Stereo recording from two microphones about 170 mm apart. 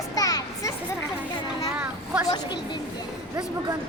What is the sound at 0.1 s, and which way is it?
Children playing, 20° left (ahead or behind).